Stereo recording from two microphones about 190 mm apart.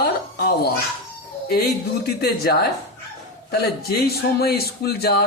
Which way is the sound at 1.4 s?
55° left (ahead or behind).